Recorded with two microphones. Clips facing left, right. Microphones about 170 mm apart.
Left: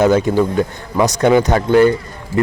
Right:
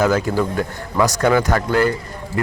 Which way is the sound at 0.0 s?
20° left (ahead or behind).